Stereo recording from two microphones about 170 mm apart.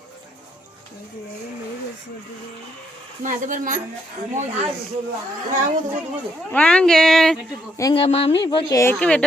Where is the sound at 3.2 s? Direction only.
50° right (ahead or behind).